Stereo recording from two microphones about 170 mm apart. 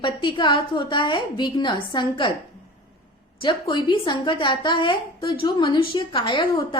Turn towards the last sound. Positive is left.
turn(degrees=30)  # may be behind; listen again after turning